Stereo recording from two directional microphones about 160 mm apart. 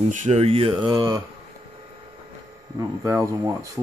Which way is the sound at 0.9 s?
20° right (ahead or behind).